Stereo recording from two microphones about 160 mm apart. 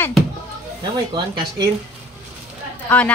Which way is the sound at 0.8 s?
30° right (ahead or behind).